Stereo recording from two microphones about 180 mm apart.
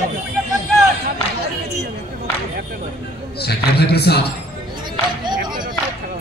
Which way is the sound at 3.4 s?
60° left (ahead or behind).